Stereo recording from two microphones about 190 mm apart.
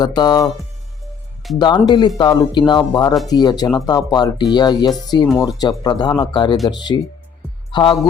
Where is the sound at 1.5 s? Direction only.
25° left (ahead or behind).